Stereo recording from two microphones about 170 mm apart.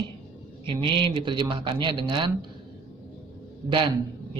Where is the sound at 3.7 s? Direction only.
30° right (ahead or behind).